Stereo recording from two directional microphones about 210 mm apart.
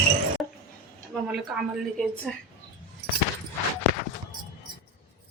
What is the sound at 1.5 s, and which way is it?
Speech, 5° right (ahead or behind).